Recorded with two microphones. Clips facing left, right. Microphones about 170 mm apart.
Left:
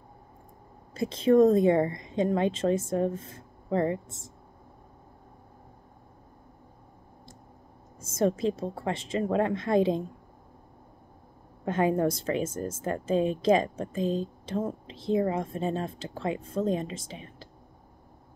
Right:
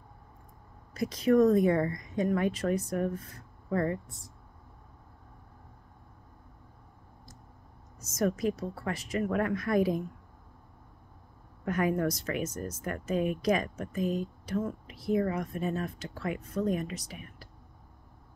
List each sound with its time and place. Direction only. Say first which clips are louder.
0.9 s speech: left 3 dB; 25° left (ahead or behind)
8.0 s speech: left 3 dB; 25° left (ahead or behind)
11.6 s speech: left 3 dB; 25° left (ahead or behind)